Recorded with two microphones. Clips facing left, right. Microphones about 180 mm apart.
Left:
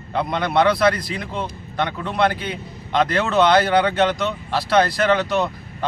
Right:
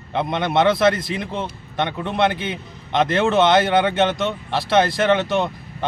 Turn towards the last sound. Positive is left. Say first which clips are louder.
# right 1 dB
turn(degrees=-25)  # may be behind; listen again after turning